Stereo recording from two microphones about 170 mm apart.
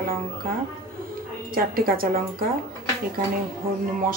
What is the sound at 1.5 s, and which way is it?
Speech, 60° right (ahead or behind).